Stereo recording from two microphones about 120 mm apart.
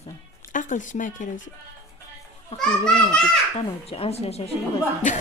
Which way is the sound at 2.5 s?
5° left (ahead or behind).